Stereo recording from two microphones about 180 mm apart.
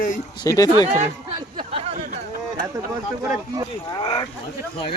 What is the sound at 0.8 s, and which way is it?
Speech, 40° right (ahead or behind).